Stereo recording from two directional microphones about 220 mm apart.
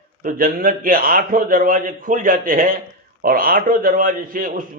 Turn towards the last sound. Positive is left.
turn(degrees=-40)  # may be behind; listen again after turning